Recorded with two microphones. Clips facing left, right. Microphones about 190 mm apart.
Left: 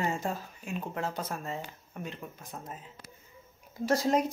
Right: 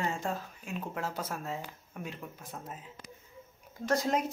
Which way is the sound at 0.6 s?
Centre (ahead or behind).